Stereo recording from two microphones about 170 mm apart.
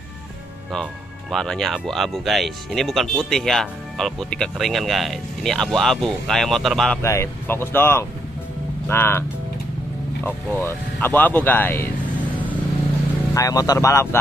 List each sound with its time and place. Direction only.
1.3 s speech: centre (ahead or behind)
7.0 s speech: 15° left (ahead or behind)
10.2 s speech: 10° left (ahead or behind)
13.3 s speech: 20° left (ahead or behind)